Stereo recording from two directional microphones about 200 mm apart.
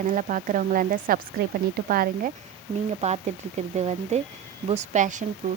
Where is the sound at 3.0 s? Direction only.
30° right (ahead or behind).